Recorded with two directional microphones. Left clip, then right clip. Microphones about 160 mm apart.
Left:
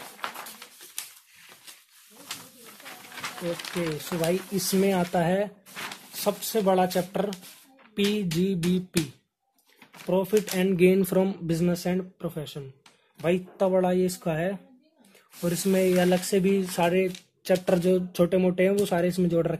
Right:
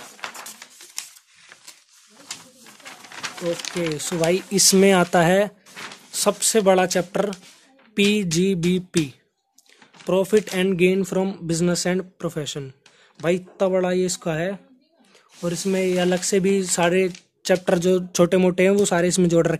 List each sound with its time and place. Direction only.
3.8 s speech: 50° right (ahead or behind)
10.0 s speech: 50° right (ahead or behind)
10.5 s speech: 30° right (ahead or behind)
10.8 s speech: 10° right (ahead or behind)
11.6 s speech: 30° right (ahead or behind)
13.2 s speech: 30° right (ahead or behind)
15.4 s speech: 10° right (ahead or behind); by 19.6 s 40° right (ahead or behind)